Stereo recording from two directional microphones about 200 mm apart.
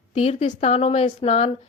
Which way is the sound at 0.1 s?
30° left (ahead or behind).